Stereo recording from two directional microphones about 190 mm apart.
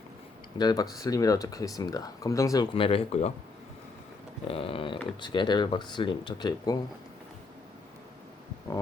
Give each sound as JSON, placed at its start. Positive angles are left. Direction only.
{"t": 0.6, "sound": "speech", "side_deg": 20}
{"t": 4.4, "sound": "speech", "side_deg": 30}